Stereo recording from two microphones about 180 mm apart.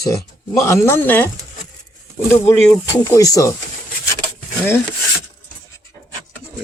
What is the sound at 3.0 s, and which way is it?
Speech, 20° left (ahead or behind).